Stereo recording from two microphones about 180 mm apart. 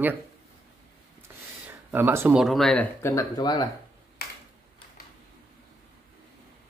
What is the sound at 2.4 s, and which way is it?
Speech, centre (ahead or behind).